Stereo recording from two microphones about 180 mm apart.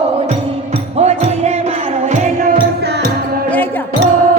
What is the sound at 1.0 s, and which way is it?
Music, 40° right (ahead or behind).